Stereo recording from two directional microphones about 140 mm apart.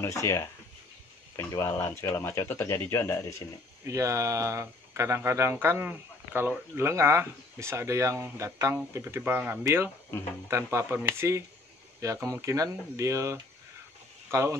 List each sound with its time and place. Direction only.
0.0 s speech: 20° left (ahead or behind)
3.8 s speech: 20° right (ahead or behind)